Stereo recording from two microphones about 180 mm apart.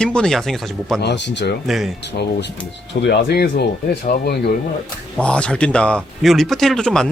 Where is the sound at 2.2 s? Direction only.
70° left (ahead or behind).